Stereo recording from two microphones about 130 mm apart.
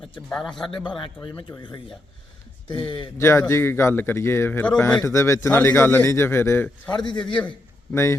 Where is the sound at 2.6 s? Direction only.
40° left (ahead or behind).